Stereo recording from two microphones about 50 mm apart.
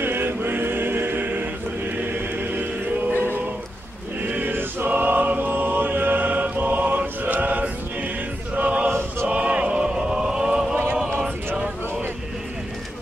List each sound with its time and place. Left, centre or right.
0.0 s choir: right
4.3 s choir: right
8.5 s male singing: right
9.3 s a sound: right